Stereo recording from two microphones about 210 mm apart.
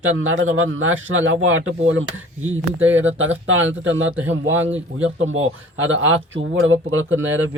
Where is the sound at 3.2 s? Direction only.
70° right (ahead or behind).